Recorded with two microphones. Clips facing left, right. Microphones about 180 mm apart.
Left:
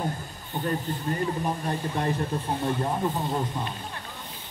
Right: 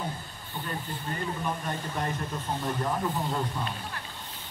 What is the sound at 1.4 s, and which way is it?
Speech, 35° left (ahead or behind).